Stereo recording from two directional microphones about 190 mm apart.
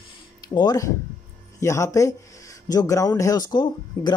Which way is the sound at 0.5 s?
20° left (ahead or behind).